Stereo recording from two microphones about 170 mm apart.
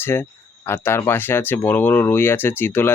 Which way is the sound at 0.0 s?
15° left (ahead or behind).